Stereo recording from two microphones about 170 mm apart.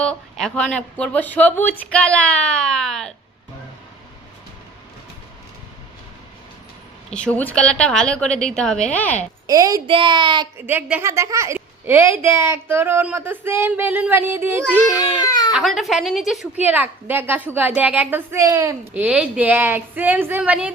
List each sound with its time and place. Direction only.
0.0 s a woman's voice: 5° left (ahead or behind)
7.1 s a woman's voice: 5° left (ahead or behind)
9.5 s a child's voice: 20° right (ahead or behind)
10.7 s a woman's voice: 10° right (ahead or behind)
14.9 s speech: 20° left (ahead or behind)
15.5 s a woman's voice: centre (ahead or behind)